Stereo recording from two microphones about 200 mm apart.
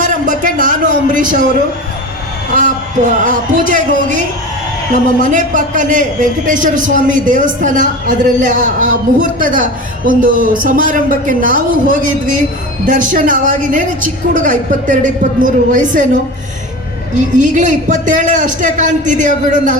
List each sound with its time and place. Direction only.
0.0 s a sound: 40° right (ahead or behind)
2.6 s a man's voice: 40° right (ahead or behind)
5.2 s a man's voice: 40° right (ahead or behind)
17.3 s a man's voice: 40° right (ahead or behind)